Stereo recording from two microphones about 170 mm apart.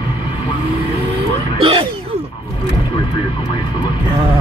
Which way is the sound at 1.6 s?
30° right (ahead or behind).